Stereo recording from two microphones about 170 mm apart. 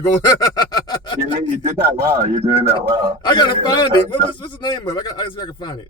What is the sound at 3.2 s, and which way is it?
A man's voice, 25° left (ahead or behind).